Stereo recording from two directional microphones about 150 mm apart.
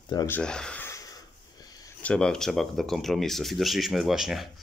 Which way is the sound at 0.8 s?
20° left (ahead or behind).